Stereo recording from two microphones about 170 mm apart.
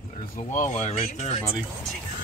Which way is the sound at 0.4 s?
45° left (ahead or behind).